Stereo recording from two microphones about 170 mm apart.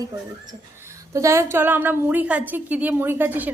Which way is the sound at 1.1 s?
15° right (ahead or behind).